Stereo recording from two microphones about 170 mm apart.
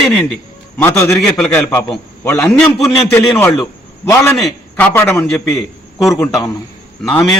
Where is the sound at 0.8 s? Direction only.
15° left (ahead or behind).